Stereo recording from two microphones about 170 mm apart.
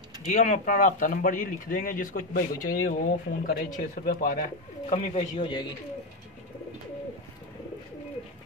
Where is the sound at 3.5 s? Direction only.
55° left (ahead or behind).